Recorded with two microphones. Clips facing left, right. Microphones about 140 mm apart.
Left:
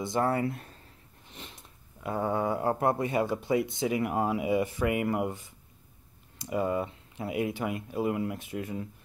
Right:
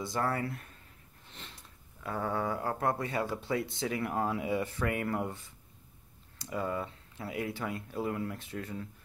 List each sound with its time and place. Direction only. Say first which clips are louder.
0.0 s speech: left 5 dB; 20° left (ahead or behind)